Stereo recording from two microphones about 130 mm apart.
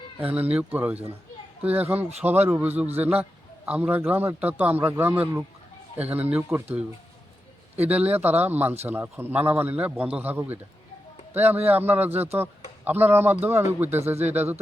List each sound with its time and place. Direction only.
0.2 s a man's voice: 10° right (ahead or behind)